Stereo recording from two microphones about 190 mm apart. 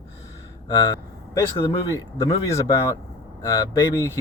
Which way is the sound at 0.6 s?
20° left (ahead or behind).